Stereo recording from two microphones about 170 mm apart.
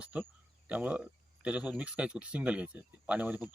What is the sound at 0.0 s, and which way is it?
Speech, 10° right (ahead or behind).